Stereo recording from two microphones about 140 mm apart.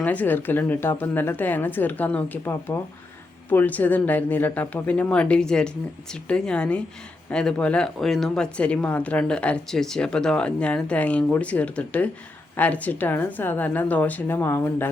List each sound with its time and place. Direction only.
0.0 s speech: 10° left (ahead or behind)